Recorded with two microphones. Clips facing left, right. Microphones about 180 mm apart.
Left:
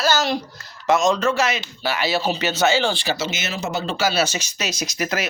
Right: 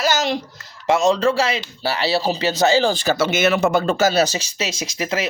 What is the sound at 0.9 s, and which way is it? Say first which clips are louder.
Speech: right 2 dB; 30° right (ahead or behind).